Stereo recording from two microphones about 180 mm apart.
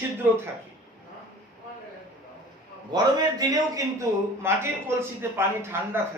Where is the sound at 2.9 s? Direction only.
20° right (ahead or behind).